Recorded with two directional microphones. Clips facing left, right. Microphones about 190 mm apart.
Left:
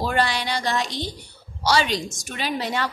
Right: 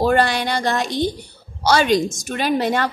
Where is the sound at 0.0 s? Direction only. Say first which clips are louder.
Right 6 dB; 50° right (ahead or behind).